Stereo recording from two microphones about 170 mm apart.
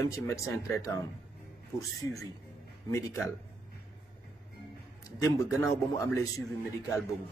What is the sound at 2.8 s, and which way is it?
Speech, 15° left (ahead or behind).